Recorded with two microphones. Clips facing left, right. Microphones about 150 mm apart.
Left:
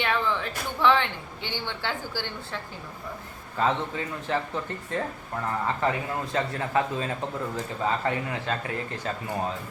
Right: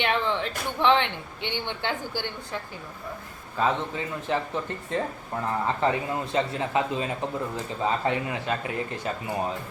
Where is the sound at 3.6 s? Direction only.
15° right (ahead or behind).